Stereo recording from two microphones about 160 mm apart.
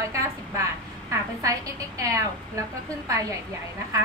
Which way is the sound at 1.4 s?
20° right (ahead or behind).